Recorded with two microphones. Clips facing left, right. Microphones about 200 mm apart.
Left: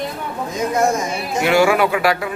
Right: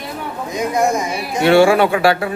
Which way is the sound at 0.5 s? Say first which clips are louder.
Right 1 dB; 15° right (ahead or behind).